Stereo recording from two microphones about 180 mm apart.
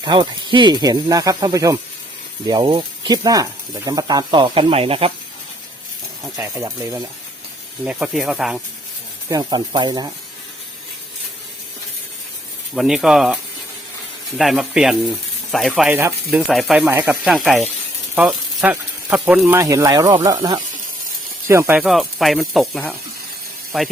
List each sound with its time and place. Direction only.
0.0 s speech: 25° right (ahead or behind)
6.3 s speech: 15° right (ahead or behind)
7.9 s speech: 5° right (ahead or behind)
9.3 s speech: 25° right (ahead or behind)
12.7 s speech: centre (ahead or behind)
16.5 s speech: centre (ahead or behind)
16.8 s speech: 10° right (ahead or behind)
17.2 s speech: centre (ahead or behind)
21.8 s speech: centre (ahead or behind)